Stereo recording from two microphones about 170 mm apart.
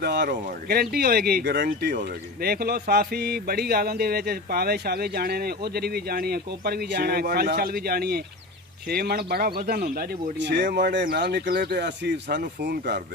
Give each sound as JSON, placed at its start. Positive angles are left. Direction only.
{"t": 0.0, "sound": "speech", "side_deg": -75}
{"t": 2.4, "sound": "speech", "side_deg": -65}